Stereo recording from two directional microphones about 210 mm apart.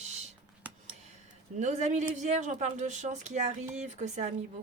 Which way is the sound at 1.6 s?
35° right (ahead or behind).